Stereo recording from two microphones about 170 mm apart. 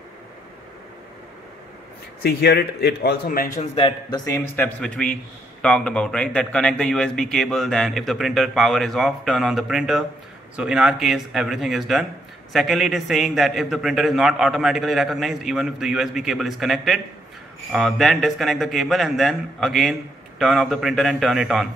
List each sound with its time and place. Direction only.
2.2 s a man's voice: 70° left (ahead or behind)
3.7 s a man's voice: 30° left (ahead or behind)
4.3 s a man's voice: 10° left (ahead or behind)